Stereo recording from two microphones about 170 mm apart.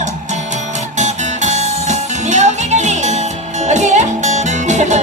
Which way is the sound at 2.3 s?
45° right (ahead or behind).